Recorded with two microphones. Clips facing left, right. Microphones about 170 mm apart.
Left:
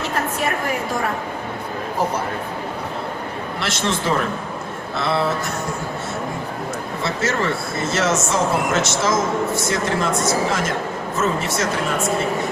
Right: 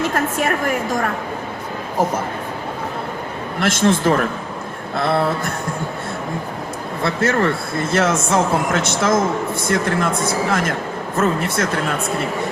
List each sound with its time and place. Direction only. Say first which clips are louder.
3.6 s a man's voice: right 8 dB; 50° right (ahead or behind)
4.9 s a sound: right 3 dB; 55° right (ahead or behind)
7.0 s speech: right 5 dB; 55° right (ahead or behind)